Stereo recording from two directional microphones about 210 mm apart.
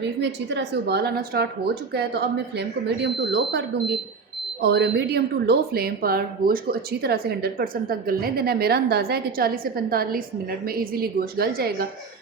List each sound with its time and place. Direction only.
0.2 s a woman's voice: 55° right (ahead or behind)